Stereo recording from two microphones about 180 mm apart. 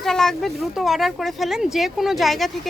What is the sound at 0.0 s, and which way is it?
Speech, 5° left (ahead or behind).